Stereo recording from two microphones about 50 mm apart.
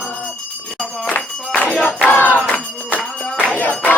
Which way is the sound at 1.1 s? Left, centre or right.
Left.